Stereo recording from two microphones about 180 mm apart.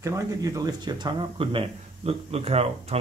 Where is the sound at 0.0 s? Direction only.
20° right (ahead or behind).